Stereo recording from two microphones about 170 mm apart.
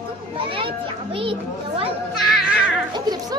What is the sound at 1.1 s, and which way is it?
Speech, 30° right (ahead or behind).